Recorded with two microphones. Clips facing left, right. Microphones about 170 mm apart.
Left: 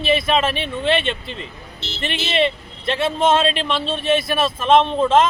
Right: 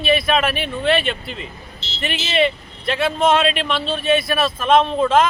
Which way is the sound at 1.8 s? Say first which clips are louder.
Left 4 dB; 60° left (ahead or behind).